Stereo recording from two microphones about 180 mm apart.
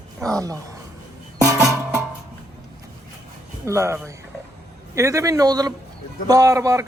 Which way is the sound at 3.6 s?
15° right (ahead or behind).